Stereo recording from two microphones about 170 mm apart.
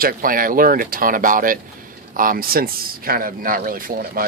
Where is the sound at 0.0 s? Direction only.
55° right (ahead or behind).